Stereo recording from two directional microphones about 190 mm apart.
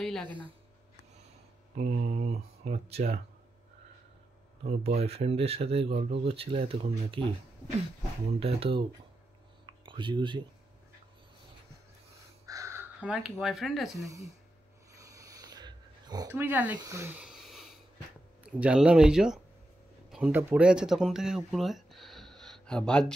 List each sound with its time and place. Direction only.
0.0 s speech: centre (ahead or behind)
1.8 s speech: 45° right (ahead or behind)
4.6 s speech: 35° right (ahead or behind)
8.4 s speech: 30° right (ahead or behind)
9.8 s speech: 25° right (ahead or behind)
12.4 s speech: 15° right (ahead or behind); by 14.0 s centre (ahead or behind)
14.0 s speech: 15° right (ahead or behind)
15.0 s wheeze: 20° right (ahead or behind)
16.3 s speech: 10° right (ahead or behind)
16.7 s a sound: 15° right (ahead or behind)
18.4 s speech: 5° right (ahead or behind)